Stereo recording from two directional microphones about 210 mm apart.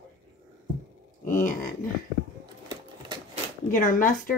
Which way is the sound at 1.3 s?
40° left (ahead or behind).